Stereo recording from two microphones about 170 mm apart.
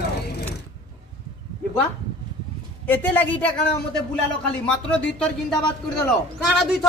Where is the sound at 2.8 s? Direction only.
10° left (ahead or behind).